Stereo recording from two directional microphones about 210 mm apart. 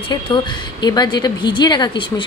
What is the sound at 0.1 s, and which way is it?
A woman's voice, 20° left (ahead or behind).